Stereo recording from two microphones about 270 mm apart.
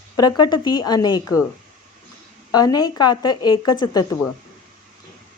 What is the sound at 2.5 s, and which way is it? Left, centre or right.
A woman's voice, centre.